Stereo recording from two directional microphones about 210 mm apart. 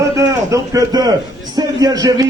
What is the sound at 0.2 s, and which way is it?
A man's voice, 15° right (ahead or behind).